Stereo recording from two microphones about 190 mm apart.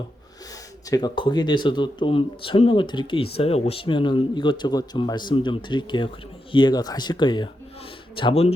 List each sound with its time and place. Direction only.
0.9 s speech: 20° left (ahead or behind)